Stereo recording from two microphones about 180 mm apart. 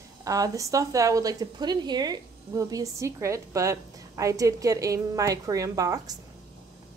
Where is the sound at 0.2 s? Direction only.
20° right (ahead or behind).